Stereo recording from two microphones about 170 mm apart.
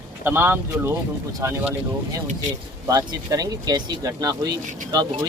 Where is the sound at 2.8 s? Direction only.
20° right (ahead or behind).